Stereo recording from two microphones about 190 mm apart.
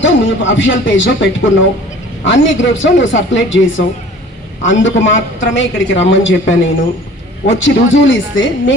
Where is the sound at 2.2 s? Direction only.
80° left.